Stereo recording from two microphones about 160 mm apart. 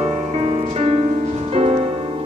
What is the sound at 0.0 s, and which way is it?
Music, 40° right (ahead or behind).